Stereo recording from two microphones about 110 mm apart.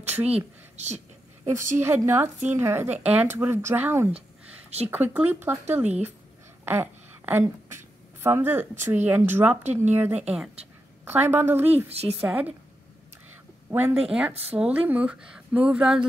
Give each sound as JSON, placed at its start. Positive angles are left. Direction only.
{"t": 0.0, "sound": "speech", "side_deg": -15}
{"t": 0.7, "sound": "speech", "side_deg": -90}
{"t": 1.4, "sound": "a woman's voice", "side_deg": -25}
{"t": 4.6, "sound": "speech", "side_deg": -70}
{"t": 4.9, "sound": "speech", "side_deg": -15}
{"t": 6.6, "sound": "a sound", "side_deg": -20}
{"t": 8.2, "sound": "a woman's voice", "side_deg": -20}
{"t": 11.1, "sound": "a woman's voice", "side_deg": -20}
{"t": 11.7, "sound": "speech", "side_deg": -70}
{"t": 12.2, "sound": "speech", "side_deg": -15}
{"t": 13.7, "sound": "speech", "side_deg": -25}